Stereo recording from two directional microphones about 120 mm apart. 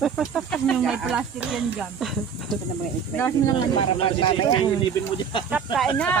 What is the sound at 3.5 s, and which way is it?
Speech, 50° left (ahead or behind).